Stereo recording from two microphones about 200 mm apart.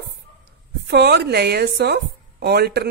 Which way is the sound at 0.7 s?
55° right (ahead or behind).